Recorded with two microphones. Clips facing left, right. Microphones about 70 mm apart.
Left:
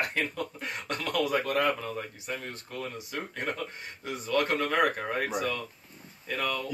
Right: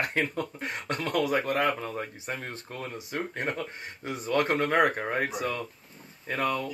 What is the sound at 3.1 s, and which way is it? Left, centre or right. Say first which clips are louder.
Speech: right 5 dB; right.